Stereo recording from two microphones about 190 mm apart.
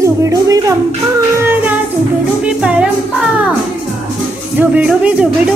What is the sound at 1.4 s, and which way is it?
Child singing, 10° right (ahead or behind).